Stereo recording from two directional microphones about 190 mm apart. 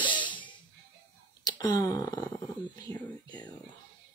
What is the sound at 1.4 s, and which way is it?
Speech, 20° left (ahead or behind).